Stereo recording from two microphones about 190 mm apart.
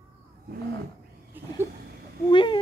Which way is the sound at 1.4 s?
10° right (ahead or behind).